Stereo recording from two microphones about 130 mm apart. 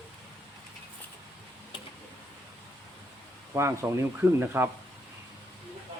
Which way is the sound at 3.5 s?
20° right (ahead or behind).